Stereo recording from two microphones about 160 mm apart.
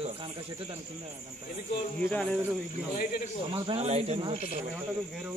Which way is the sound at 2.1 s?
5° left (ahead or behind).